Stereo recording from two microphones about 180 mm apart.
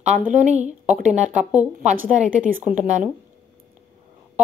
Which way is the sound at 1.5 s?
10° right (ahead or behind).